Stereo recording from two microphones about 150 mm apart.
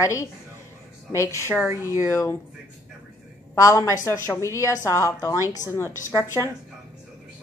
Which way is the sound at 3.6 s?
20° left (ahead or behind).